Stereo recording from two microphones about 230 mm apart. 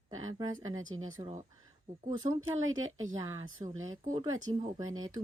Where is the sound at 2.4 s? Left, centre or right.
Right.